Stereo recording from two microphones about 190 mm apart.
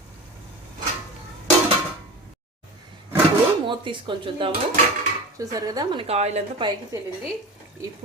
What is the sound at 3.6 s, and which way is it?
A woman's voice, 25° right (ahead or behind).